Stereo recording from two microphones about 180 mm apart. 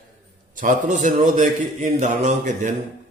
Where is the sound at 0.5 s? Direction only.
45° right (ahead or behind).